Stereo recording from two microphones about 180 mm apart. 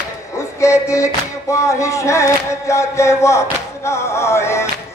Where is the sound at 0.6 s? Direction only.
15° left (ahead or behind).